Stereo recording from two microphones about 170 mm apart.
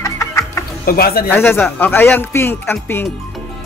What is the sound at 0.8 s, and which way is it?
Speech, 60° left (ahead or behind).